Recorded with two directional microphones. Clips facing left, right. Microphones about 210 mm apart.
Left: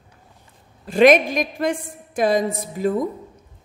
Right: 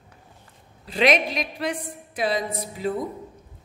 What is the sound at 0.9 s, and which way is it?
A woman's voice, 50° left (ahead or behind).